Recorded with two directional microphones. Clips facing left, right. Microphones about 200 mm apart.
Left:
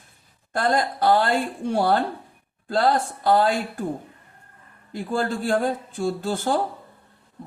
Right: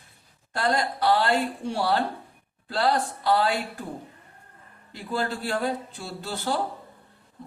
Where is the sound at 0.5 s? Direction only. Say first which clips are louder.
Left 3 dB; 45° left (ahead or behind).